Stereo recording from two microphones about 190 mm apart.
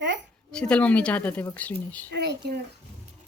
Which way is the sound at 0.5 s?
5° left (ahead or behind).